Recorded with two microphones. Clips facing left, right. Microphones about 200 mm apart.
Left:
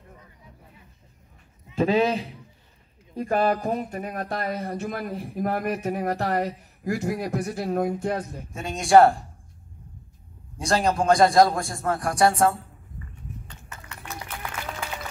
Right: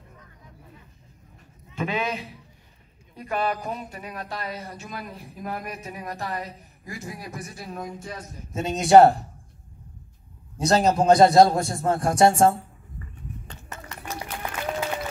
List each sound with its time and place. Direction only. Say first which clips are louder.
1.8 s a man's voice: left 7 dB; 35° left (ahead or behind)
3.2 s speech: left 5 dB; 45° left (ahead or behind); by 8.5 s 60° left (ahead or behind)
8.5 s a man's voice: right 2 dB; 20° right (ahead or behind)
10.6 s a man's voice: right 3 dB; 20° right (ahead or behind)
13.7 s a sound: right 4 dB; 40° right (ahead or behind)